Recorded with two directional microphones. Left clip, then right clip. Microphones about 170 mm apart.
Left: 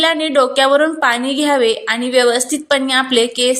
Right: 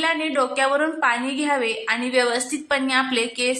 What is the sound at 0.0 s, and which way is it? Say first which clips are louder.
Speech: left 8 dB; 30° left (ahead or behind).